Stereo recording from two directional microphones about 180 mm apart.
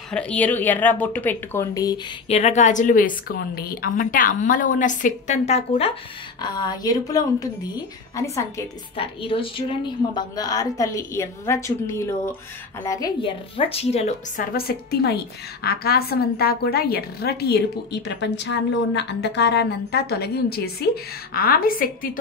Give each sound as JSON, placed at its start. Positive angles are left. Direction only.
{"t": 0.1, "sound": "a woman's voice", "side_deg": 5}
{"t": 2.2, "sound": "a woman's voice", "side_deg": 35}
{"t": 6.4, "sound": "a woman's voice", "side_deg": 25}
{"t": 8.9, "sound": "a woman's voice", "side_deg": 30}
{"t": 13.2, "sound": "speech", "side_deg": 30}
{"t": 14.5, "sound": "a woman's voice", "side_deg": 60}